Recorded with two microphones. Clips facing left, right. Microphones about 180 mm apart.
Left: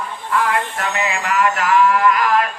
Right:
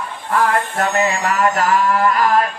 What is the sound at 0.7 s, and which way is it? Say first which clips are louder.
Music: right 4 dB; 40° right (ahead or behind).